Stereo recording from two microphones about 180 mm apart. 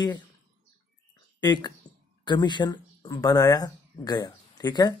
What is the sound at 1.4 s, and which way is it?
Speech, 25° left (ahead or behind).